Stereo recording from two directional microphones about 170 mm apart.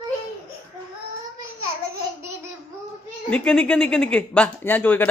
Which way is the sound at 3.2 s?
5° left (ahead or behind).